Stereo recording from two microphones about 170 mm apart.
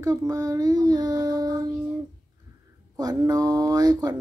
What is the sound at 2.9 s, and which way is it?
Speech, 20° right (ahead or behind).